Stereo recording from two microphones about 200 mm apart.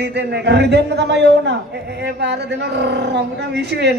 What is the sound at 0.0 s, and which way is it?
A woman's voice, 55° right (ahead or behind).